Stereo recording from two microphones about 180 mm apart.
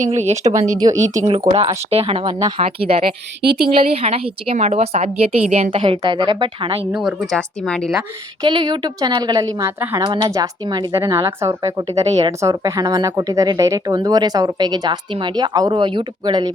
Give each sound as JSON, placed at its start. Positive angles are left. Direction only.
{"t": 0.0, "sound": "a woman's voice", "side_deg": -40}
{"t": 3.4, "sound": "speech", "side_deg": -60}
{"t": 3.8, "sound": "a woman's voice", "side_deg": -35}
{"t": 6.9, "sound": "speech", "side_deg": 0}
{"t": 8.4, "sound": "speech", "side_deg": -25}
{"t": 10.0, "sound": "speech", "side_deg": -25}